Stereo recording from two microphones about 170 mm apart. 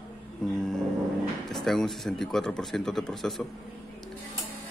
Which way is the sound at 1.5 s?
Centre (ahead or behind).